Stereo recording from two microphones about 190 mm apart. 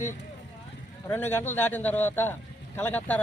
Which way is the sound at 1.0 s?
10° left (ahead or behind).